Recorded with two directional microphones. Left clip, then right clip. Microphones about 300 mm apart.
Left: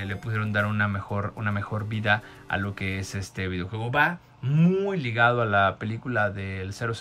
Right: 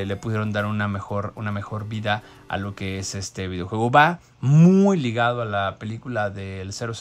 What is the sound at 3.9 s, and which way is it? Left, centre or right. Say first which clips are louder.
Speech: right 7 dB; centre.